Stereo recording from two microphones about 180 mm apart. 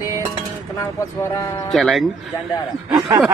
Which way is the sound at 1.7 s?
Centre (ahead or behind).